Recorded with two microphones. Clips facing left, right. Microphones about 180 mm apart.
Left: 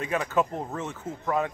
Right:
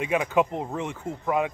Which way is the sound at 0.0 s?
15° right (ahead or behind).